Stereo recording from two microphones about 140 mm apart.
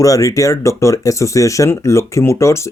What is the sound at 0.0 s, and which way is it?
Speech, 25° left (ahead or behind).